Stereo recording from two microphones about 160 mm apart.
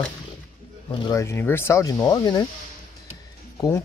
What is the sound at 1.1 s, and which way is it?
Speech, 15° left (ahead or behind).